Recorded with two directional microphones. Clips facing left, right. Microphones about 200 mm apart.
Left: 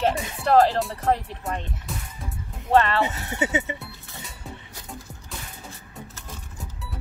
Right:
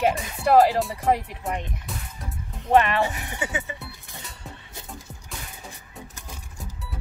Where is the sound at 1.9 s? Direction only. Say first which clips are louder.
Left 1 dB; centre (ahead or behind).